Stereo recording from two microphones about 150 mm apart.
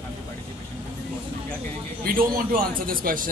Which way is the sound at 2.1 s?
70° right (ahead or behind).